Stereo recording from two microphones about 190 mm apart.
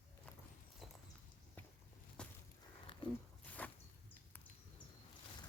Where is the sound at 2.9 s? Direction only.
25° left (ahead or behind).